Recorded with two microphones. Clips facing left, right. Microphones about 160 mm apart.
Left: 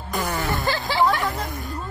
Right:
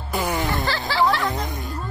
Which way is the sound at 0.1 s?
10° right (ahead or behind).